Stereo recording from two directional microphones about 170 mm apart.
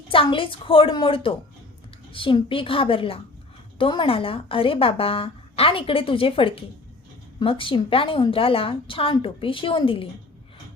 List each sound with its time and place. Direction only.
0.1 s speech: 30° left (ahead or behind)